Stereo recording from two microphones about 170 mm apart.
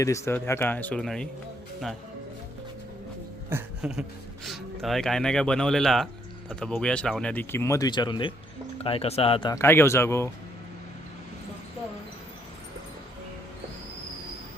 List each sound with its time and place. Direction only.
0.0 s speech: 15° left (ahead or behind)
3.5 s a sound: 5° right (ahead or behind)
4.4 s speech: centre (ahead or behind); by 9.6 s 30° left (ahead or behind)
9.6 s speech: 15° left (ahead or behind)